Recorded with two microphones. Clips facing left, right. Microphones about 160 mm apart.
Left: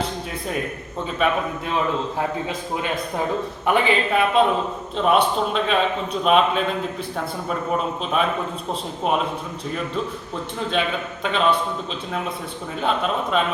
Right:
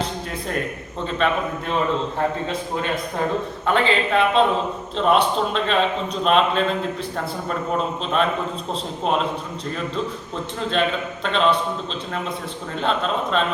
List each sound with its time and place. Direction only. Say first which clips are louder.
1.2 s a man's voice: even; 5° left (ahead or behind)
3.7 s a man's voice: even; 15° left (ahead or behind)
10.7 s a man's voice: right 2 dB; 5° left (ahead or behind)
12.8 s a man's voice: even; 5° left (ahead or behind)